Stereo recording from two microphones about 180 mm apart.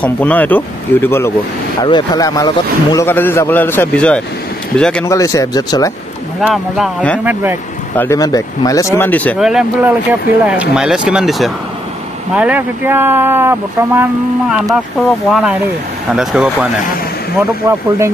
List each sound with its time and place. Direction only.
0.0 s a man's voice: 10° left (ahead or behind)
1.8 s a man's voice: 25° left (ahead or behind); by 5.0 s 5° left (ahead or behind)
5.0 s speech: 20° left (ahead or behind)
6.4 s speech: centre (ahead or behind)
8.0 s a man's voice: 20° left (ahead or behind)
9.4 s speech: 5° right (ahead or behind)
15.0 s speech: centre (ahead or behind)
17.6 s speech: 15° right (ahead or behind)